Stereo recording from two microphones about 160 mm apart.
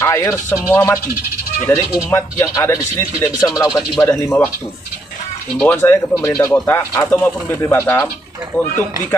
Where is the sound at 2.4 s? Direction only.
20° left (ahead or behind).